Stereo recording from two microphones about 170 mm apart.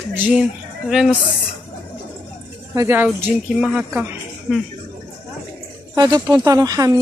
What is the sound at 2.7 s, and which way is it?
Speech, 15° right (ahead or behind).